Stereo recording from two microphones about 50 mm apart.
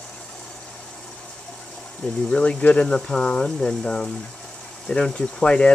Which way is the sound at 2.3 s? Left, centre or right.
Centre.